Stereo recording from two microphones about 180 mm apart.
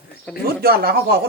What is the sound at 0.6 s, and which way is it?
Speech, 60° right (ahead or behind).